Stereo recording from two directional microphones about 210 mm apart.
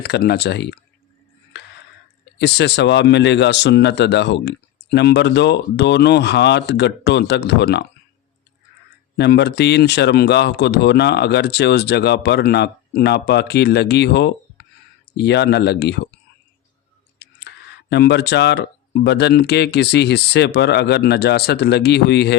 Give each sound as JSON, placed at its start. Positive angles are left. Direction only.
{"t": 0.0, "sound": "speech", "side_deg": 50}
{"t": 2.4, "sound": "speech", "side_deg": 55}
{"t": 9.1, "sound": "speech", "side_deg": 55}
{"t": 17.2, "sound": "speech", "side_deg": 55}